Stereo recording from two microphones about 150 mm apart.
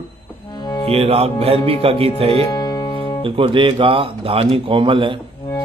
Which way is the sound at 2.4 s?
25° left (ahead or behind).